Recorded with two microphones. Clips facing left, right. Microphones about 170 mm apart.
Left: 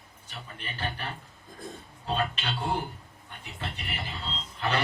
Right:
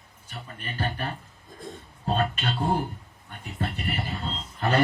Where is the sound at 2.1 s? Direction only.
45° right (ahead or behind).